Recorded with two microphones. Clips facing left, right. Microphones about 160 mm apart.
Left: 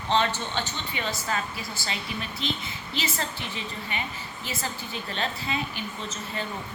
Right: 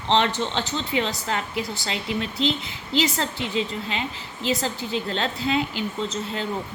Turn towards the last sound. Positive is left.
turn(degrees=-90)